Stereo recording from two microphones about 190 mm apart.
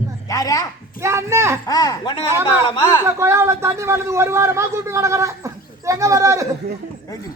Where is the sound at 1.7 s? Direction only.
20° left (ahead or behind).